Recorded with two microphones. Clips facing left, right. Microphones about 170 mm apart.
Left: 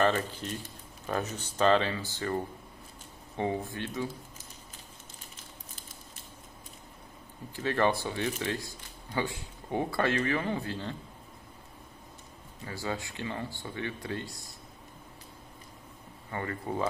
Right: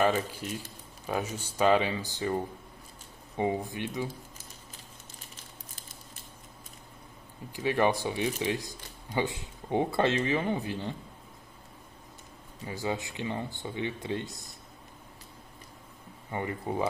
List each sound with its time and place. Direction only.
0.0 s speech: 10° right (ahead or behind)
7.5 s speech: 15° right (ahead or behind)
12.6 s speech: 20° right (ahead or behind)
16.3 s speech: 15° right (ahead or behind)